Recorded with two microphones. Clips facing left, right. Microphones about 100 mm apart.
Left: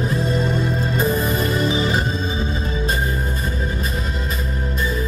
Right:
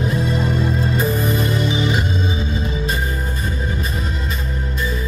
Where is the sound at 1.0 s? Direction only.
40° left (ahead or behind).